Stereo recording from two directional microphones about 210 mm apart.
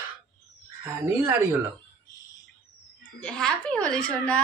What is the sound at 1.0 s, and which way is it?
Speech, 10° right (ahead or behind).